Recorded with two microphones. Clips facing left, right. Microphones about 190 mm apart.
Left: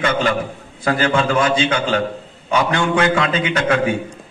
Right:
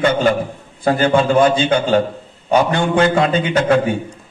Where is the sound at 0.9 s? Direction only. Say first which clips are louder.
Right 3 dB; 35° right (ahead or behind).